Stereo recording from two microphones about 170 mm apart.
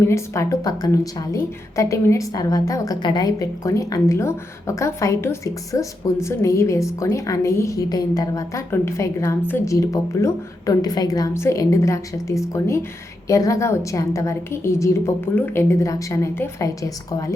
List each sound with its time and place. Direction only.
0.0 s a woman's voice: 15° left (ahead or behind)